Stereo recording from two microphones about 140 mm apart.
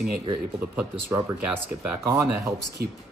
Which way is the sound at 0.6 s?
15° right (ahead or behind).